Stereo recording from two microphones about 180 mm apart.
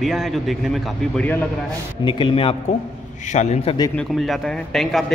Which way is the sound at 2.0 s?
25° left (ahead or behind).